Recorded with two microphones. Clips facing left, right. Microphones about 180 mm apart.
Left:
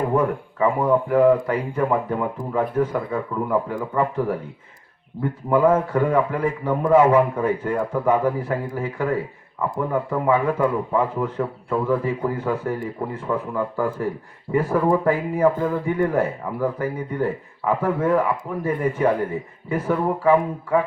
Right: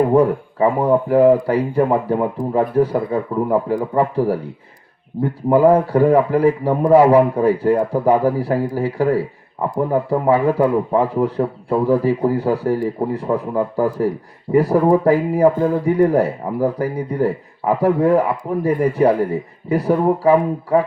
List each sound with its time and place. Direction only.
0.1 s a man's voice: 35° right (ahead or behind)